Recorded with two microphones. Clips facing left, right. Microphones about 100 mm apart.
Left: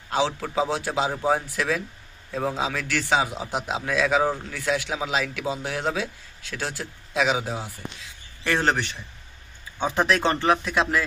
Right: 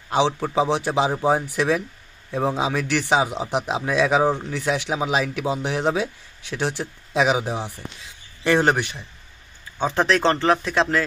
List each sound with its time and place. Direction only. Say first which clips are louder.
0.1 s a man's voice: right 4 dB; 20° right (ahead or behind)
9.8 s speech: right 2 dB; centre (ahead or behind)